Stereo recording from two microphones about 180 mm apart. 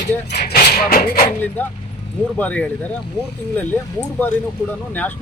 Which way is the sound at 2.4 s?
10° left (ahead or behind).